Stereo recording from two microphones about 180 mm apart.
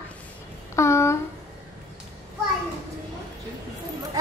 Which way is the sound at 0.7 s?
15° left (ahead or behind).